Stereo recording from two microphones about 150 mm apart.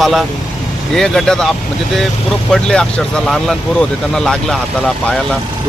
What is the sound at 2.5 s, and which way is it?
Speech, 5° left (ahead or behind).